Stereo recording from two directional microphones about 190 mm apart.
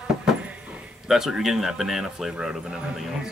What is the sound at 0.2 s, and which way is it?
Speech, 5° right (ahead or behind).